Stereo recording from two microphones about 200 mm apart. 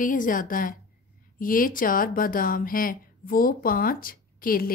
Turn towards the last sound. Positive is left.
turn(degrees=45)  # may be behind; listen again after turning